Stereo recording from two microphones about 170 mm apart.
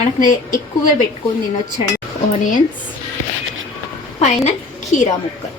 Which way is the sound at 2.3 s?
50° left (ahead or behind).